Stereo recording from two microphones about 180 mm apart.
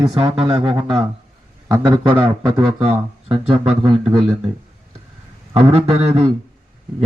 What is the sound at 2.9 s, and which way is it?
Speech, 30° right (ahead or behind).